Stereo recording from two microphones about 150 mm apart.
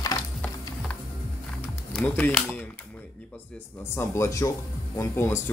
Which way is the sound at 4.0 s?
20° left (ahead or behind).